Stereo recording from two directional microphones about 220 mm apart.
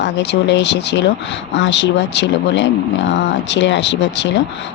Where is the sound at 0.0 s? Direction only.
55° left (ahead or behind).